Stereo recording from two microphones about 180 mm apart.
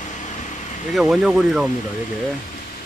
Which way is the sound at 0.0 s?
40° left (ahead or behind).